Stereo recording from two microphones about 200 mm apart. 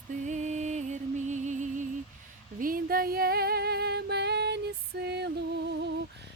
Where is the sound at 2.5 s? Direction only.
45° right (ahead or behind).